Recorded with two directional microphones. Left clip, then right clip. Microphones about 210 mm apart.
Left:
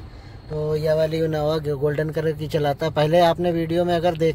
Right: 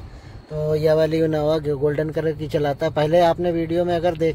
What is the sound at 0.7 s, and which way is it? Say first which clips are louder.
Speech: right 3 dB; 50° right (ahead or behind).